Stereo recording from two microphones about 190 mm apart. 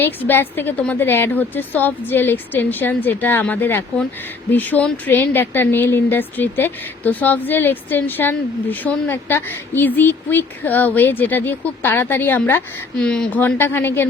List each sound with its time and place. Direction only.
0.0 s speech: 10° left (ahead or behind)